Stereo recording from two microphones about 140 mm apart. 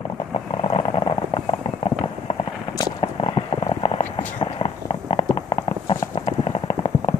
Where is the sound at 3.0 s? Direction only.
40° left (ahead or behind).